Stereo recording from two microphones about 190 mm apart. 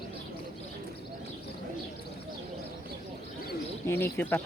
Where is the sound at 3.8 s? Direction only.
10° left (ahead or behind).